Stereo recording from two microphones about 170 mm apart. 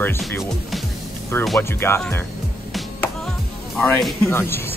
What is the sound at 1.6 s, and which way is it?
Speech, 15° left (ahead or behind).